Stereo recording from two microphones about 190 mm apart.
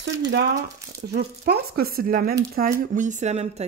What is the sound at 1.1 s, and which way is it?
Speech, 55° right (ahead or behind).